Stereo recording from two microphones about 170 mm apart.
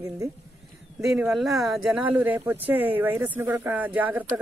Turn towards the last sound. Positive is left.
turn(degrees=-10)  # may be behind; listen again after turning